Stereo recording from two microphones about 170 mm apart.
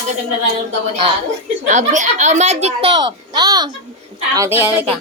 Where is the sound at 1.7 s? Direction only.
45° right (ahead or behind); by 4.7 s 15° right (ahead or behind).